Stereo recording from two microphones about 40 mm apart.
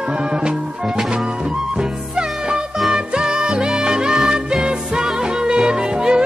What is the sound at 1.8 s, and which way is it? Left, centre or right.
Music, right.